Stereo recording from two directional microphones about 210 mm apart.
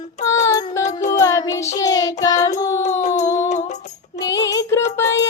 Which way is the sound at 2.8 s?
35° left (ahead or behind).